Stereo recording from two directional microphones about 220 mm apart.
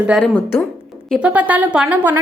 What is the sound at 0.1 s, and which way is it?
Speech, 5° left (ahead or behind).